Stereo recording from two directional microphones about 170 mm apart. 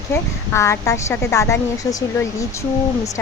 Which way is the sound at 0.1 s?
15° left (ahead or behind).